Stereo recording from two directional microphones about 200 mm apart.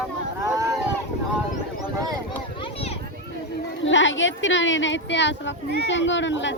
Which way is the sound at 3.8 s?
70° left (ahead or behind).